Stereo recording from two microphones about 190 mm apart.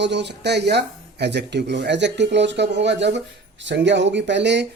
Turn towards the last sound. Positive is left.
turn(degrees=-65)  # may be behind; listen again after turning